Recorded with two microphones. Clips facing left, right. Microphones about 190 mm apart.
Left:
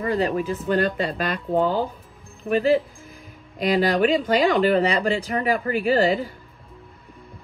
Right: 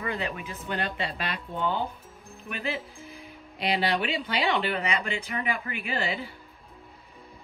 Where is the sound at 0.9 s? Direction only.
50° left (ahead or behind).